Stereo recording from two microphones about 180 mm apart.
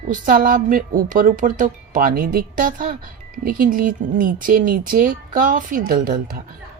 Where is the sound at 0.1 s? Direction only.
50° right (ahead or behind).